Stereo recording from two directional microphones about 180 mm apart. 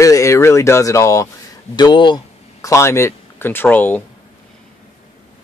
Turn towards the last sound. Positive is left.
turn(degrees=10)  # may be behind; listen again after turning